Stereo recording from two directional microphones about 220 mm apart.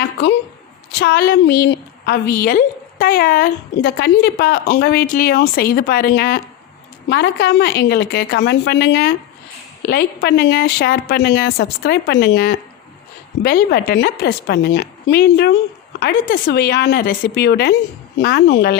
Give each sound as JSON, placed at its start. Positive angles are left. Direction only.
{"t": 0.9, "sound": "a woman's voice", "side_deg": 45}